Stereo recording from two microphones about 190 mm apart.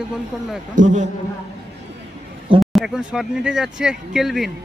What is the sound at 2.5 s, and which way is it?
Speech, centre (ahead or behind).